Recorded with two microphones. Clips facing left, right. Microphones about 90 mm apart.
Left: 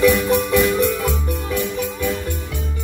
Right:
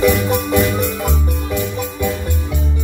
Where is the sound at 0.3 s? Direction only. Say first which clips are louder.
Even; 20° right (ahead or behind).